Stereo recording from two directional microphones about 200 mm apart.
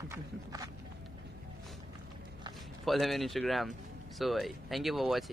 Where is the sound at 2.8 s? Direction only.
Centre (ahead or behind).